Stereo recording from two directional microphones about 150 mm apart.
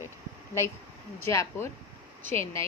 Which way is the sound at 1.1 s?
15° left (ahead or behind).